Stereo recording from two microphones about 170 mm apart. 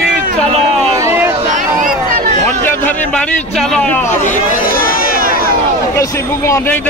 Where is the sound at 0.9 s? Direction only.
15° right (ahead or behind).